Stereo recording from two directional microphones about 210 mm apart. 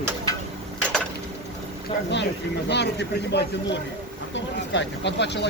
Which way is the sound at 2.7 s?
55° left (ahead or behind).